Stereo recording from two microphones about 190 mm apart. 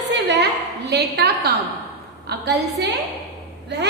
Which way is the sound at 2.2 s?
60° right (ahead or behind).